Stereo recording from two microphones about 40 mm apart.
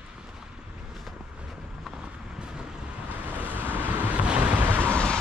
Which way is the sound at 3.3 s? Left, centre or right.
Right.